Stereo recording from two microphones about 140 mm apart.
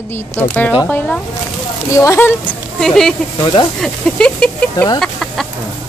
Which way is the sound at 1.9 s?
20° left (ahead or behind).